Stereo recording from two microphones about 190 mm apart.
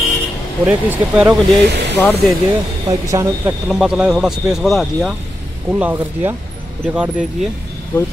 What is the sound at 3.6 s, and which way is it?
Speech, 5° right (ahead or behind).